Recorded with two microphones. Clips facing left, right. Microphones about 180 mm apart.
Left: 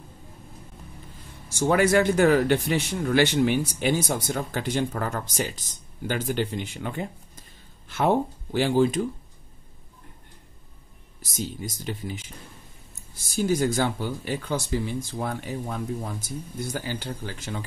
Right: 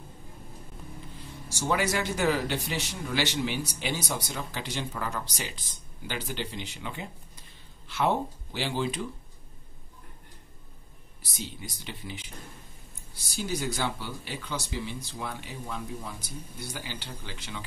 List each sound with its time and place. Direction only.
1.5 s speech: 55° left (ahead or behind)
11.1 s speech: 45° left (ahead or behind)